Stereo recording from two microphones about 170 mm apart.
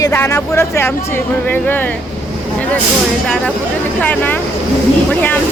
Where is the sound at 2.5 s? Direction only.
10° left (ahead or behind).